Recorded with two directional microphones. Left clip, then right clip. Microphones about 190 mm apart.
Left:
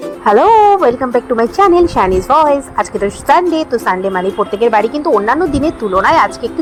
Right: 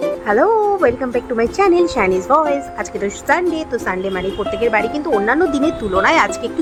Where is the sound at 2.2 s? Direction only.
Centre (ahead or behind).